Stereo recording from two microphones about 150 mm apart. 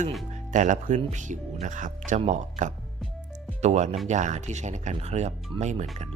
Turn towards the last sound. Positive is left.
turn(degrees=-50)  # may be behind; listen again after turning